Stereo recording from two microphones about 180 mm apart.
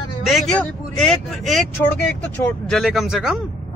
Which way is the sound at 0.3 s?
5° left (ahead or behind).